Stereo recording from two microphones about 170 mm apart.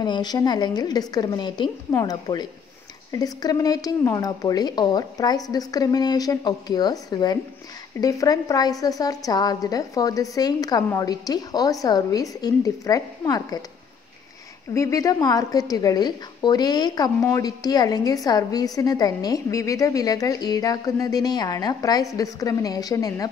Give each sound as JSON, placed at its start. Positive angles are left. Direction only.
{"t": 0.0, "sound": "a woman's voice", "side_deg": 25}
{"t": 14.7, "sound": "a woman's voice", "side_deg": 20}